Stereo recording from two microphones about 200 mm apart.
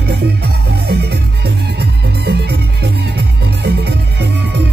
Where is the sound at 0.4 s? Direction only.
55° right (ahead or behind).